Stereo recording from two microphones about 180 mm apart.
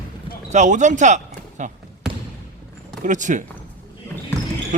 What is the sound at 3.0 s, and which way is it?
Speech, 45° right (ahead or behind).